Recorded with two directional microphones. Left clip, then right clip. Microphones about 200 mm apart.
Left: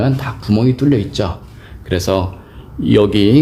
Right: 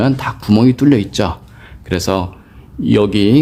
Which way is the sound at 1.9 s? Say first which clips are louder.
Left 1 dB; 15° right (ahead or behind).